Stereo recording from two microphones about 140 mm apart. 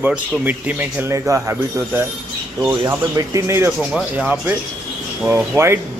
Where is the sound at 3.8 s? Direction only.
5° right (ahead or behind).